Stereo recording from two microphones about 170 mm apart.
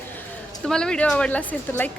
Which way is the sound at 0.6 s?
5° left (ahead or behind).